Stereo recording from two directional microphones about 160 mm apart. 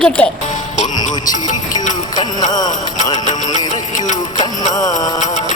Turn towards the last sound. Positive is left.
turn(degrees=50)  # may be behind; listen again after turning